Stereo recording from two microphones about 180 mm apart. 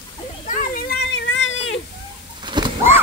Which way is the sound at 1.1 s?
85° left.